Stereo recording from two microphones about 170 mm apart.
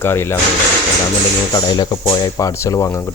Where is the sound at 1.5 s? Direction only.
25° left (ahead or behind).